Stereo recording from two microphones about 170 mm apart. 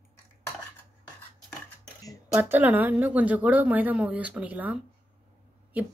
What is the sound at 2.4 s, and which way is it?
A woman's voice, 10° right (ahead or behind).